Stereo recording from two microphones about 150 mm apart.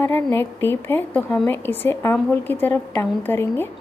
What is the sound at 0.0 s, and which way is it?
A woman's voice, 15° left (ahead or behind).